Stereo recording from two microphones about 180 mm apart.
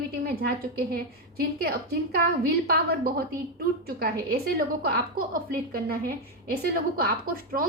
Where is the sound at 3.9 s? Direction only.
55° right (ahead or behind).